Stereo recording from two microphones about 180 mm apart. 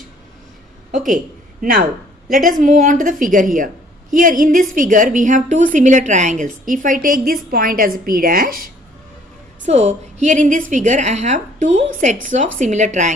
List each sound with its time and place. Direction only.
0.9 s a woman's voice: 45° right (ahead or behind)
9.6 s a woman's voice: 40° right (ahead or behind)